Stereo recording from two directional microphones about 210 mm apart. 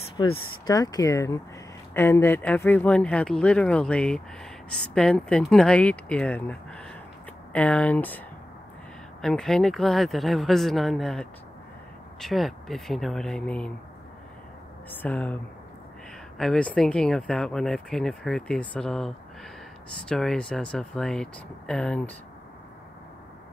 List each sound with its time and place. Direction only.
0.2 s speech: 20° left (ahead or behind)
9.2 s speech: 5° left (ahead or behind)
14.9 s speech: 5° left (ahead or behind)